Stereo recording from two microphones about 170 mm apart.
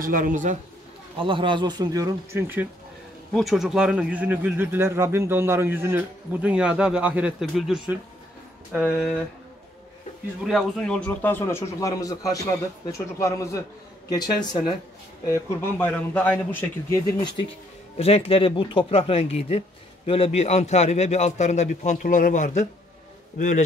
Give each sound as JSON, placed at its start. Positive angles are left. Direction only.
{"t": 0.0, "sound": "speech", "side_deg": -50}
{"t": 1.2, "sound": "speech", "side_deg": -30}
{"t": 3.3, "sound": "speech", "side_deg": 0}
{"t": 10.4, "sound": "a man's voice", "side_deg": 0}
{"t": 17.9, "sound": "a man's voice", "side_deg": 35}